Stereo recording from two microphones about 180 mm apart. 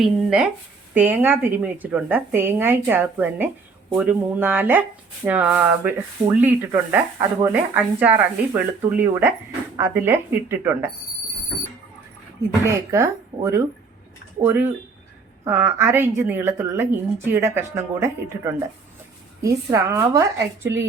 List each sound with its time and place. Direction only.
0.0 s a woman's voice: 5° right (ahead or behind)
12.6 s a woman's voice: 15° right (ahead or behind)